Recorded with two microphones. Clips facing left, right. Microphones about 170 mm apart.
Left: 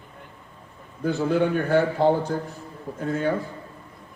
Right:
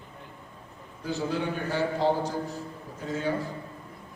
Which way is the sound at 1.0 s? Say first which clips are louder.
Left 8 dB; 55° left (ahead or behind).